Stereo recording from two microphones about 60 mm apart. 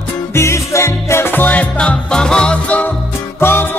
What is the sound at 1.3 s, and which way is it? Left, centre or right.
Music, left.